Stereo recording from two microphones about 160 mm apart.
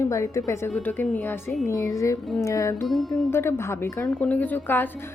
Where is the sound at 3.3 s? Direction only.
15° left (ahead or behind).